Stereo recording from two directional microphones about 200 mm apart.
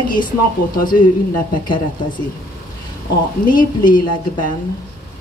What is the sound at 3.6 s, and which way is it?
Speech, 45° left (ahead or behind).